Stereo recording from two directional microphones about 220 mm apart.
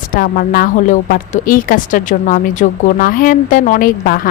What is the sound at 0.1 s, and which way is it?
A woman's voice, 40° left (ahead or behind).